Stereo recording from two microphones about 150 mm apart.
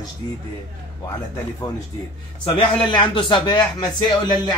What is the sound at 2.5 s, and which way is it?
A man's voice, 35° left (ahead or behind).